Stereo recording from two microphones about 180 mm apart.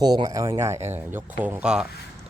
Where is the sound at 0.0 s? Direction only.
20° right (ahead or behind).